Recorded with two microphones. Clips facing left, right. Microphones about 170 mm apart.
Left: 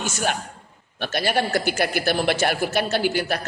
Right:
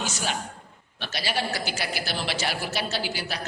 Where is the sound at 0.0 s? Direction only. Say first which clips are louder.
Left 5 dB; 50° left (ahead or behind).